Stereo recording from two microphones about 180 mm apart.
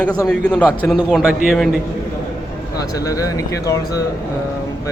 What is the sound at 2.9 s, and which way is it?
Speech, 20° left (ahead or behind).